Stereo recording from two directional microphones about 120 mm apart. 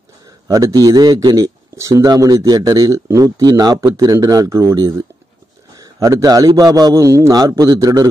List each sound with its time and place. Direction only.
0.5 s a man's voice: 30° right (ahead or behind)
5.8 s a sound: 25° right (ahead or behind)
6.5 s a man's voice: 30° right (ahead or behind)